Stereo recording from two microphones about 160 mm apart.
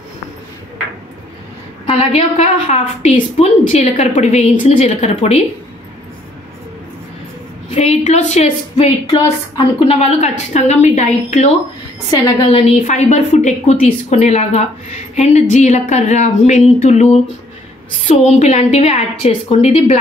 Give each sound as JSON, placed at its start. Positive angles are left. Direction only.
{"t": 1.9, "sound": "a woman's voice", "side_deg": 40}
{"t": 7.7, "sound": "a woman's voice", "side_deg": 45}